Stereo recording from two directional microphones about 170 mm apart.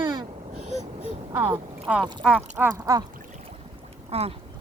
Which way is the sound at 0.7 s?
40° right (ahead or behind).